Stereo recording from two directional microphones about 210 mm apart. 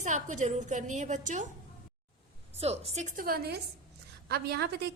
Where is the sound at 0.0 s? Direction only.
35° right (ahead or behind).